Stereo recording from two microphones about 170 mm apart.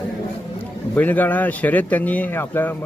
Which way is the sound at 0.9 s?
10° left (ahead or behind).